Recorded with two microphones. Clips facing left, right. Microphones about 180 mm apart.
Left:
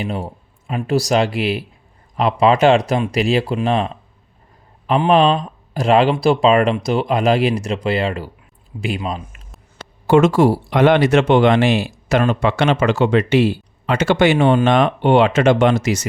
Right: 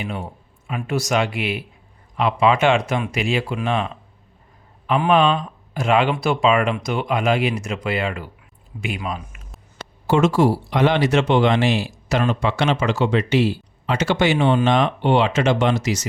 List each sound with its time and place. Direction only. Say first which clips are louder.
0.0 s speech: left 4 dB; 35° left (ahead or behind)
10.1 s speech: left 4 dB; 55° left (ahead or behind)